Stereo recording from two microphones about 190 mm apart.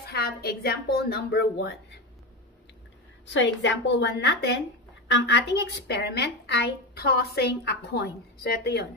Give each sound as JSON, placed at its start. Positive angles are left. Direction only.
{"t": 0.1, "sound": "a woman's voice", "side_deg": 55}
{"t": 3.3, "sound": "a woman's voice", "side_deg": 70}